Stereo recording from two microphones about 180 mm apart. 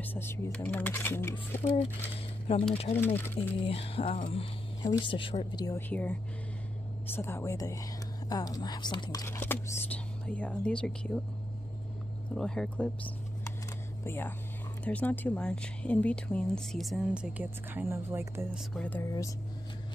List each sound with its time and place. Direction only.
0.0 s speech: 10° left (ahead or behind)
2.9 s speech: 10° left (ahead or behind)
3.5 s speech: 35° left (ahead or behind)
5.8 s speech: 10° left (ahead or behind); by 9.2 s 25° left (ahead or behind)
9.2 s speech: 15° left (ahead or behind)
12.4 s speech: 5° left (ahead or behind)
14.0 s speech: 10° left (ahead or behind); by 18.6 s 15° right (ahead or behind)
18.7 s speech: 10° left (ahead or behind)